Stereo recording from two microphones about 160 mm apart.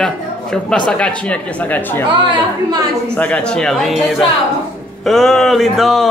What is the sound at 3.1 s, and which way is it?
Mantra, 5° left (ahead or behind).